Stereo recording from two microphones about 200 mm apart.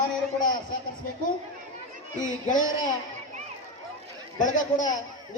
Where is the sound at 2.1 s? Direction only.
40° left (ahead or behind).